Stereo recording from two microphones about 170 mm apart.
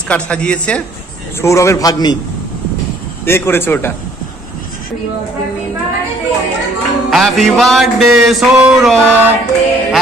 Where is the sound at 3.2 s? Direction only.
15° left (ahead or behind).